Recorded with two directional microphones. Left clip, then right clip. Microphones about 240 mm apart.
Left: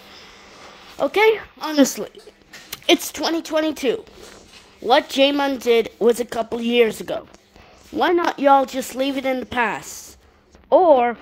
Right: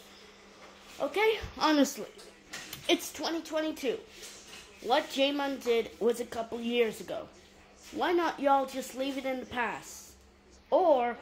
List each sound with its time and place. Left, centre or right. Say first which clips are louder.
0.9 s speech: left 12 dB; left